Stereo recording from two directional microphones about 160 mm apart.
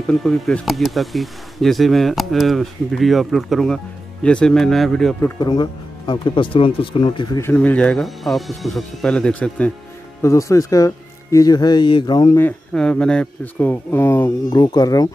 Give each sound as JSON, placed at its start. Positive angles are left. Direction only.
{"t": 0.0, "sound": "speech", "side_deg": 5}
{"t": 5.4, "sound": "speech", "side_deg": 25}
{"t": 7.3, "sound": "speech", "side_deg": 15}
{"t": 10.2, "sound": "speech", "side_deg": 20}
{"t": 12.4, "sound": "speech", "side_deg": 10}
{"t": 14.5, "sound": "speech", "side_deg": 25}